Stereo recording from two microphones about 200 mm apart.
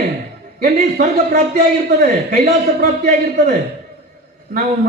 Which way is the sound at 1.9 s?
50° right (ahead or behind).